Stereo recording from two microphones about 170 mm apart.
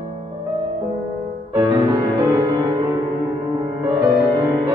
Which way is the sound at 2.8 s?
20° right (ahead or behind).